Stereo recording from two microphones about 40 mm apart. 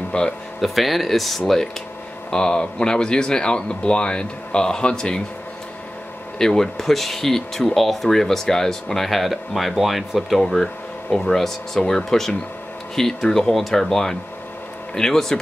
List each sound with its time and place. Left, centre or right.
0.1 s speech: left
0.6 s speech: centre
2.3 s speech: centre
6.3 s speech: centre